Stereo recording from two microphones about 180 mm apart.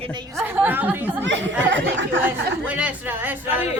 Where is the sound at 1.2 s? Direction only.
90° right.